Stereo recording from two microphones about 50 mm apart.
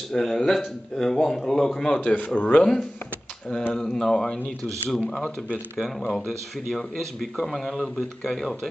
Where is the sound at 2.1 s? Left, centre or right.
Left.